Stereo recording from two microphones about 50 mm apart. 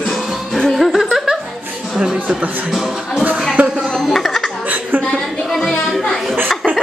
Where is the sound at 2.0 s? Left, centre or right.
Centre.